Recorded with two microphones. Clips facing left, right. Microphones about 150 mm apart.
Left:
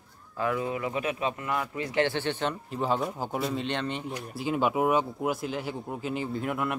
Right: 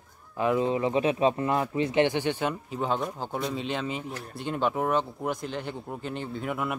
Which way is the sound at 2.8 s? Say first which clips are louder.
Left 1 dB; centre (ahead or behind).